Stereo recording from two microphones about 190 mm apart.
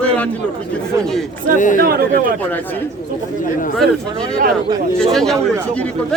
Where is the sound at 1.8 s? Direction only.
55° right (ahead or behind).